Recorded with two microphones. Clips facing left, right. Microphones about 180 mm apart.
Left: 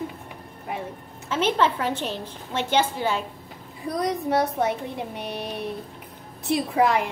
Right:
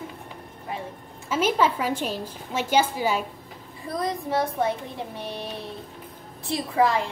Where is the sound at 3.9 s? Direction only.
20° left (ahead or behind).